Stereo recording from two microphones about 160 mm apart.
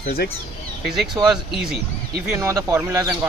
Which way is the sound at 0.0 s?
70° left (ahead or behind).